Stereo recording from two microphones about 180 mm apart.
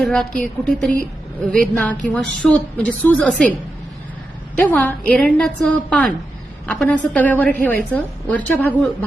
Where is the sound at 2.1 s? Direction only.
5° left (ahead or behind).